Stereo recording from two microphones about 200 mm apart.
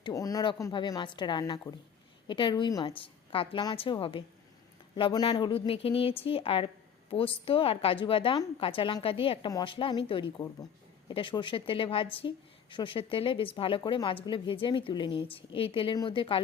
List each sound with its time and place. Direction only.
0.0 s speech: 15° left (ahead or behind)